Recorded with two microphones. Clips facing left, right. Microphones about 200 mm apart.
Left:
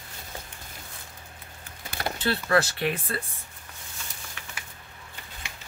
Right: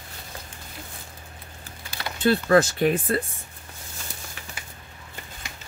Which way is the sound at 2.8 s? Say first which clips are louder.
Right 7 dB; 50° right (ahead or behind).